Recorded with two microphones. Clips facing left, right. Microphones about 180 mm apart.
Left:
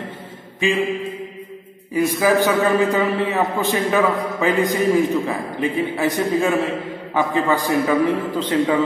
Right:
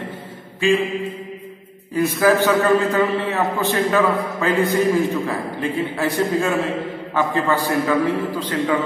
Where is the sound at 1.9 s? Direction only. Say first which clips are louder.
Even; 15° left (ahead or behind).